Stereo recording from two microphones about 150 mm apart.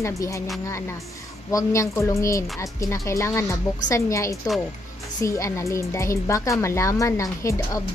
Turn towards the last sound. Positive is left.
turn(degrees=20)  # may be behind; listen again after turning